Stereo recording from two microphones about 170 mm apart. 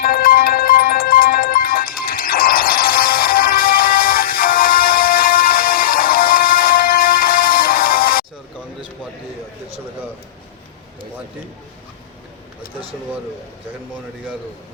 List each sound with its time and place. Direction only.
0.0 s music: 60° left (ahead or behind)